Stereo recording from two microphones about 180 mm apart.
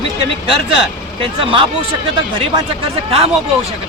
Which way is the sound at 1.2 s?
30° right (ahead or behind).